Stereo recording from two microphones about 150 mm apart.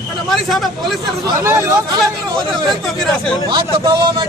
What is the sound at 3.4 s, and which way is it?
Speech, 30° right (ahead or behind).